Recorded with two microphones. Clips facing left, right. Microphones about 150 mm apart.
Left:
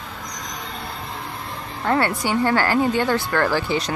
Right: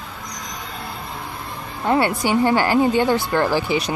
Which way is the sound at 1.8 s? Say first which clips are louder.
Right 2 dB; 15° right (ahead or behind).